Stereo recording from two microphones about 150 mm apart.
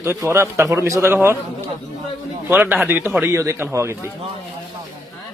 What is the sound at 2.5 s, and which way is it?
Speech, 10° right (ahead or behind).